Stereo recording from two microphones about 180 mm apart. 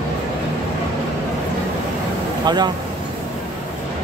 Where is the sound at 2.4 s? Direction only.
25° right (ahead or behind).